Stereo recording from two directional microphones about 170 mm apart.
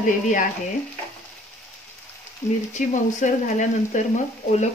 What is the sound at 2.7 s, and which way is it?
Speech, 45° left (ahead or behind).